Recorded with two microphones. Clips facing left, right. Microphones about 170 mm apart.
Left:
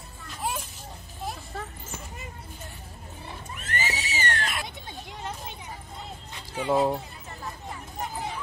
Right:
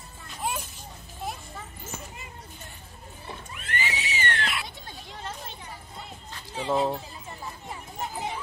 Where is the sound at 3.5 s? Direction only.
40° left (ahead or behind).